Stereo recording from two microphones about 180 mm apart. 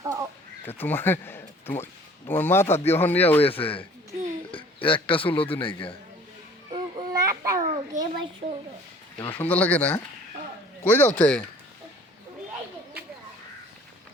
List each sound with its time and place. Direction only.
0.0 s crow: 15° right (ahead or behind)
0.6 s speech: 10° left (ahead or behind)
3.4 s a man's voice: 30° left (ahead or behind)
6.7 s babbling: 30° right (ahead or behind)
7.1 s a sound: 20° right (ahead or behind)
9.1 s speech: 10° left (ahead or behind)